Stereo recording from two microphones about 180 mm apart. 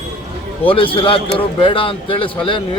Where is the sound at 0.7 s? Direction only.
30° left (ahead or behind).